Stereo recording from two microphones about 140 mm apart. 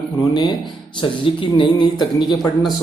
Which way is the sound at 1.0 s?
35° left (ahead or behind).